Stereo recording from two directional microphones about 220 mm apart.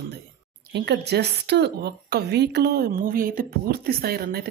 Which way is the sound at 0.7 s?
50° right (ahead or behind).